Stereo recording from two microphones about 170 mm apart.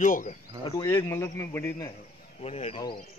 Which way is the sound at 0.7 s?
20° left (ahead or behind).